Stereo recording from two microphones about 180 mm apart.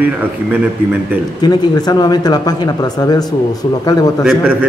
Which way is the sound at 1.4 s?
20° left (ahead or behind).